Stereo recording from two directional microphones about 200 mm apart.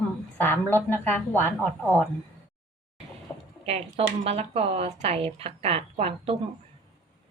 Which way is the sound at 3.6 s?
30° right (ahead or behind).